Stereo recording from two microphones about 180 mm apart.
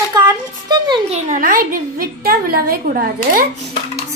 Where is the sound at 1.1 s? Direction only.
50° right (ahead or behind).